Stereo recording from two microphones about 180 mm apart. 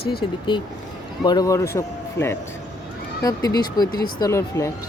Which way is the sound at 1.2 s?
20° left (ahead or behind).